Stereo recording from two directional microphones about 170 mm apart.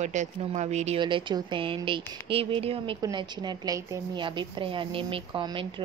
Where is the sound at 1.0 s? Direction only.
25° right (ahead or behind).